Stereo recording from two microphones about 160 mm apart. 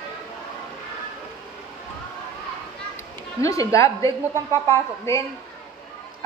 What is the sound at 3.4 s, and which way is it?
A woman's voice, 20° left (ahead or behind).